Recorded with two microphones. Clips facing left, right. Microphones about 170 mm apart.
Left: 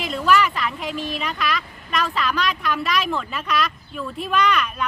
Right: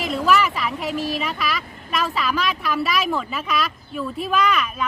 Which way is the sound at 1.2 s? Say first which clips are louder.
Even; 5° right (ahead or behind).